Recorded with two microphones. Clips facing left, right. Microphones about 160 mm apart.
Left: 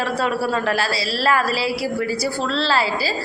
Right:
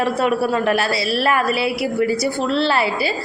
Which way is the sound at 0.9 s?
30° left (ahead or behind).